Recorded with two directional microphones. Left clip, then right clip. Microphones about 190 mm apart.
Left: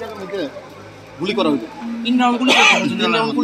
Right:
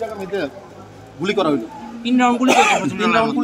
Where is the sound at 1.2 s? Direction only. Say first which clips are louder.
Even; 30° right (ahead or behind).